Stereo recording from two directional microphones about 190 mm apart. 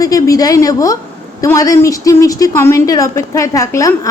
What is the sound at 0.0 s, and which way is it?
A woman's voice, 20° left (ahead or behind).